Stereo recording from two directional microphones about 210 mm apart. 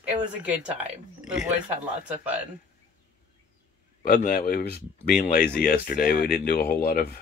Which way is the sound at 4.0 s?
40° left (ahead or behind).